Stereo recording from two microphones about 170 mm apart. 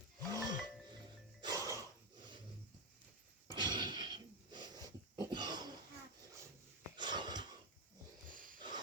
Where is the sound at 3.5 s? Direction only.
25° right (ahead or behind).